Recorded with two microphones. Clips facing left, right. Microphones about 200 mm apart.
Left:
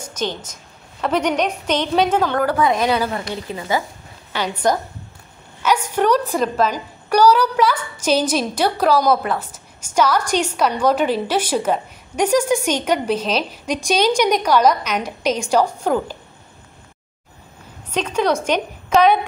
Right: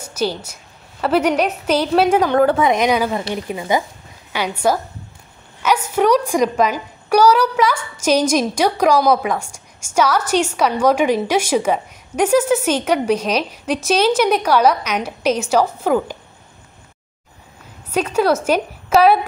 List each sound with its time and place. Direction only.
0.0 s a woman's voice: 10° right (ahead or behind)
5.9 s a woman's voice: 10° right (ahead or behind)
17.9 s a woman's voice: 10° right (ahead or behind)